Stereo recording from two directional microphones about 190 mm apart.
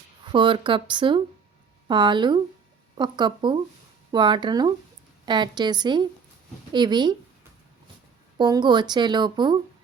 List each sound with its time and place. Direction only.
0.3 s speech: 25° right (ahead or behind)
8.4 s speech: 20° right (ahead or behind)